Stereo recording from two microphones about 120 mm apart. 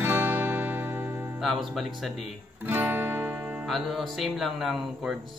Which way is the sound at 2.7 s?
15° right (ahead or behind).